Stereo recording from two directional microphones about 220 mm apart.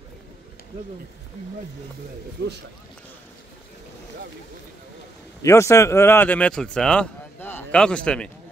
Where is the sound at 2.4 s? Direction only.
50° right (ahead or behind).